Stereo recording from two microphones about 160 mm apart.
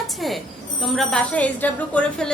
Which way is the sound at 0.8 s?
Centre (ahead or behind).